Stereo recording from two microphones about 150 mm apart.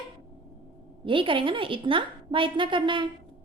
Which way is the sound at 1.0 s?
35° right (ahead or behind).